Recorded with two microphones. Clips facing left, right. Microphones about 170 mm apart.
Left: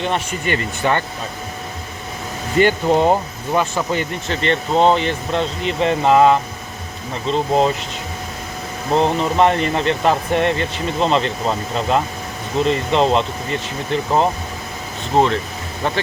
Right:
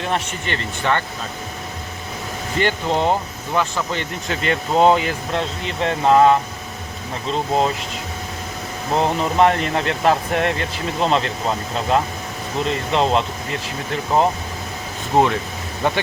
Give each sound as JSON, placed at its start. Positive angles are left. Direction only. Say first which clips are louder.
{"t": 0.3, "sound": "speech", "louder": "left 5 dB", "side_deg": 10}
{"t": 2.6, "sound": "speech", "louder": "left 5 dB", "side_deg": 15}
{"t": 4.3, "sound": "speech", "louder": "left 1 dB", "side_deg": -5}
{"t": 9.0, "sound": "speech", "louder": "left 1 dB", "side_deg": 0}